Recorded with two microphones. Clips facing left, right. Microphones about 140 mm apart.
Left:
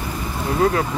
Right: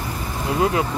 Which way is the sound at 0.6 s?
15° right (ahead or behind).